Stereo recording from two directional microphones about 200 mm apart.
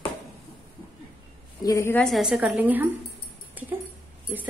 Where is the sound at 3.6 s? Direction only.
10° right (ahead or behind).